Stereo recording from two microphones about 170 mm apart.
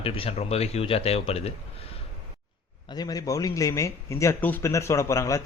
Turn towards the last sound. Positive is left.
turn(degrees=20)  # may be behind; listen again after turning